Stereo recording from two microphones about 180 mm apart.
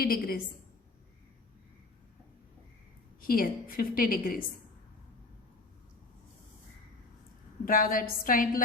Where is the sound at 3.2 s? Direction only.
55° left (ahead or behind).